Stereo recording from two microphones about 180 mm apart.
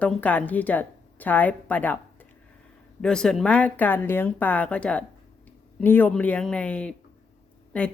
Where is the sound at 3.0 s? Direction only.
5° left (ahead or behind).